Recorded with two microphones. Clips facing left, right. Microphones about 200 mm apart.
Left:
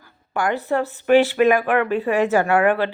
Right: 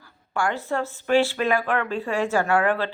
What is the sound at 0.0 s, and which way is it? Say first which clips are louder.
Speech: left 3 dB; 20° left (ahead or behind).